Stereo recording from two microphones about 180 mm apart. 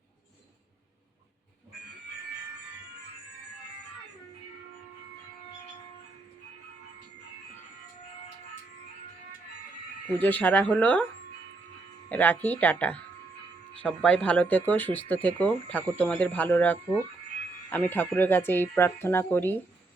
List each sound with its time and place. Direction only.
10.2 s speech: 10° left (ahead or behind)
12.0 s speech: 10° left (ahead or behind)